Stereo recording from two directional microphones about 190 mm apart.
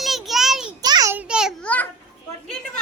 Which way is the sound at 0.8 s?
20° right (ahead or behind).